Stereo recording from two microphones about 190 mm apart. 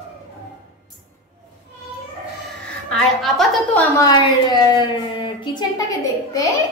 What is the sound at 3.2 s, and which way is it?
Speech, centre (ahead or behind).